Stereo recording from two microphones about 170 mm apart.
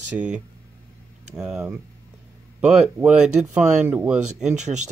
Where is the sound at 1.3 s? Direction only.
5° right (ahead or behind).